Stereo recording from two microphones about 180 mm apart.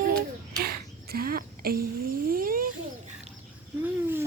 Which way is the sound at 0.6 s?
60° right (ahead or behind).